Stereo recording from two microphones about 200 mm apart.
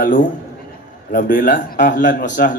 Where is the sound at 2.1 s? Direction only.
45° left (ahead or behind).